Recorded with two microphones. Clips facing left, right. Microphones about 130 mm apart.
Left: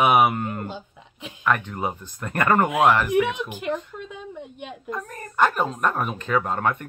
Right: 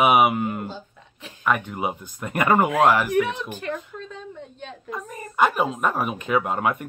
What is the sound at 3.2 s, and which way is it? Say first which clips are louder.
Speech: left 1 dB; 15° left (ahead or behind).